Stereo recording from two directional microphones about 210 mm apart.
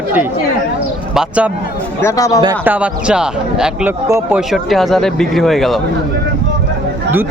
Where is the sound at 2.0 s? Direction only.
15° left (ahead or behind).